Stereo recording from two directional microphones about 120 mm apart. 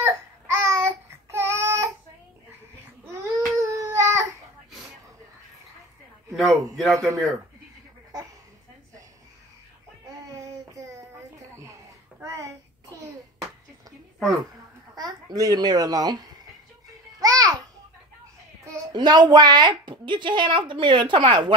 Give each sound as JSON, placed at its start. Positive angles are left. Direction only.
{"t": 0.0, "sound": "child singing", "side_deg": -25}
{"t": 3.1, "sound": "baby cry", "side_deg": -30}
{"t": 6.3, "sound": "a man's voice", "side_deg": 0}
{"t": 12.2, "sound": "a sound", "side_deg": -25}
{"t": 15.0, "sound": "a child's voice", "side_deg": -35}
{"t": 17.2, "sound": "music", "side_deg": -30}
{"t": 18.9, "sound": "a woman's voice", "side_deg": -35}